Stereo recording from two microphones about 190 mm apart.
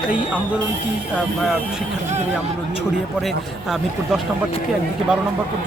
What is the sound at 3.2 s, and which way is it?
A man's voice, centre (ahead or behind).